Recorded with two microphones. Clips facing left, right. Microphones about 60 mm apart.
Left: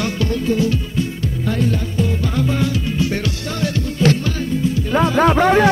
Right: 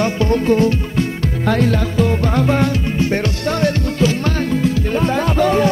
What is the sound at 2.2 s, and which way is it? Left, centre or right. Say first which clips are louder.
Music: right 4 dB; right.